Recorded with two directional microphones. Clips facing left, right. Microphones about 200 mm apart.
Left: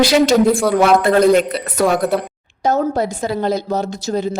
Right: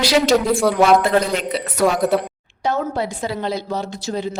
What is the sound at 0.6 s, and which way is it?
Speech, centre (ahead or behind).